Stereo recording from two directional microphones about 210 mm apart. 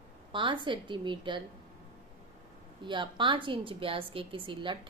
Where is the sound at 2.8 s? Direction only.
20° right (ahead or behind).